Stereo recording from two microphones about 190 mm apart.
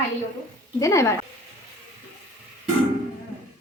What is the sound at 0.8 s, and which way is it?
Speech, 15° left (ahead or behind).